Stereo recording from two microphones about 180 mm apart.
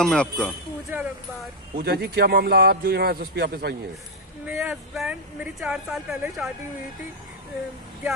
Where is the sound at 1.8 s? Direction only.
60° right (ahead or behind).